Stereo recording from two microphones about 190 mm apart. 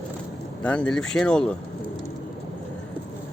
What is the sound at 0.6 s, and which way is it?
Speech, 5° left (ahead or behind).